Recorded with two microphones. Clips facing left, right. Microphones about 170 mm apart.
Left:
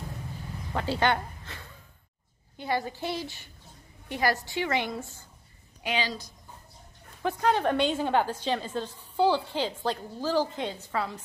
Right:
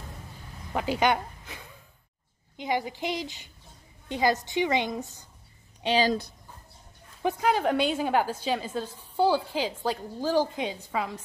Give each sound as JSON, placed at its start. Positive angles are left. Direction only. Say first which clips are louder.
{"t": 0.7, "sound": "a woman's voice", "louder": "right 2 dB", "side_deg": -15}
{"t": 5.8, "sound": "a sound", "louder": "right 6 dB", "side_deg": -30}
{"t": 6.0, "sound": "speech", "louder": "right 10 dB", "side_deg": -60}
{"t": 7.2, "sound": "a woman's voice", "louder": "right 1 dB", "side_deg": -10}